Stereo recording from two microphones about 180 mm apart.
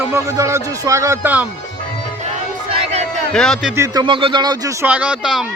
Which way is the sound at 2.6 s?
35° right (ahead or behind).